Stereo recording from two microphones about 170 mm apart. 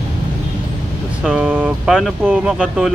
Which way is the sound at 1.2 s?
5° right (ahead or behind).